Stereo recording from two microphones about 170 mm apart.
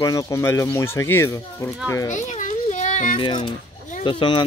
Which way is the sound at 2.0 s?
45° left (ahead or behind).